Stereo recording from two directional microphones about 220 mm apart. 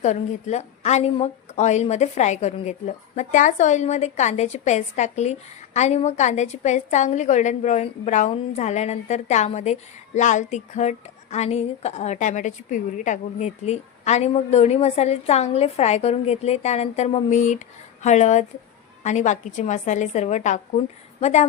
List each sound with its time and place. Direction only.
0.0 s a woman's voice: 30° left (ahead or behind)